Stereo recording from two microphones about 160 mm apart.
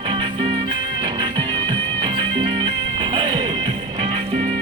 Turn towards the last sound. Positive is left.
turn(degrees=-35)  # may be behind; listen again after turning